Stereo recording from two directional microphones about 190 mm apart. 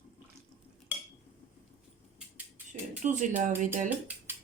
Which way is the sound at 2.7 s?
40° right (ahead or behind).